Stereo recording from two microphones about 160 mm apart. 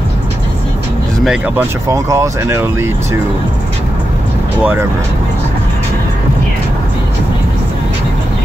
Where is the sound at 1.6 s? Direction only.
20° right (ahead or behind).